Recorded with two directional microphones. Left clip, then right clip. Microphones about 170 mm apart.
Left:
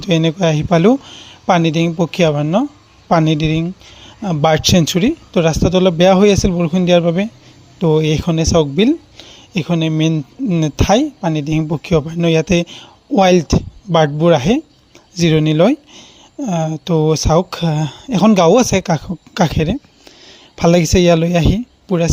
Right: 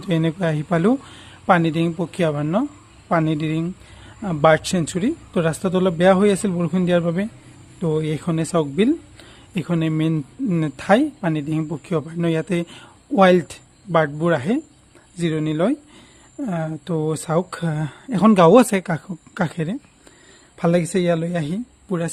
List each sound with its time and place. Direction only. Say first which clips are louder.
0.0 s a man's voice: left 7 dB; 25° left (ahead or behind)
4.4 s a man's voice: left 3 dB; 35° left (ahead or behind)
16.4 s a man's voice: left 7 dB; 20° left (ahead or behind)